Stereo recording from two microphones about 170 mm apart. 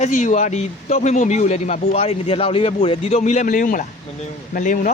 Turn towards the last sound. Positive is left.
turn(degrees=50)  # may be behind; listen again after turning